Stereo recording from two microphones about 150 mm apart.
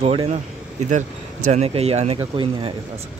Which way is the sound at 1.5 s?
45° right (ahead or behind).